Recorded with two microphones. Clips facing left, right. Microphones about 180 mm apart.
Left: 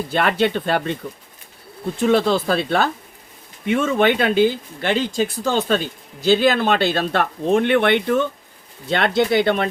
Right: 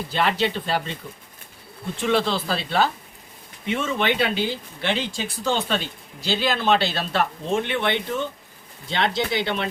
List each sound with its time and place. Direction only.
0.1 s speech: 55° left (ahead or behind)
2.0 s speech: 45° left (ahead or behind)